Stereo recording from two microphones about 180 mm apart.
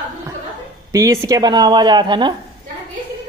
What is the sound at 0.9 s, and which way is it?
A woman's voice, 15° right (ahead or behind).